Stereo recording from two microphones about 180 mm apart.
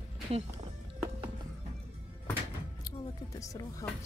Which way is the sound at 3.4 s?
20° left (ahead or behind).